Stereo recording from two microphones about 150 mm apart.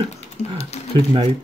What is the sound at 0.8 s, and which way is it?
Speech, 50° left (ahead or behind).